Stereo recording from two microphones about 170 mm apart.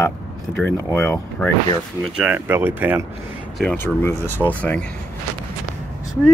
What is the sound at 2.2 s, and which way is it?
Speech, 10° right (ahead or behind).